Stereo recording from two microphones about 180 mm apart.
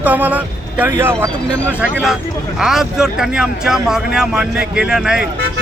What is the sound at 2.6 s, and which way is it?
Speech, centre (ahead or behind).